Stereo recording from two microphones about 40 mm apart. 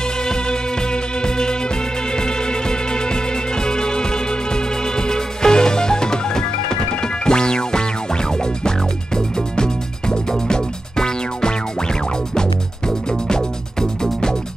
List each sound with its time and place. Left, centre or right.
0.0 s music: centre